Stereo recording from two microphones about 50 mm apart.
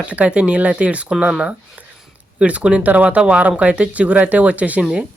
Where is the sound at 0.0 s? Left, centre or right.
Right.